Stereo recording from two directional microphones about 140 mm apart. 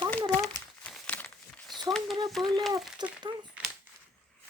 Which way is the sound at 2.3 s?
Centre (ahead or behind).